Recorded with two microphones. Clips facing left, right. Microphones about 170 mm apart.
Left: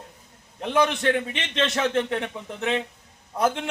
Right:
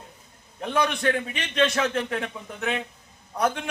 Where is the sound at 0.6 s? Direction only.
25° left (ahead or behind).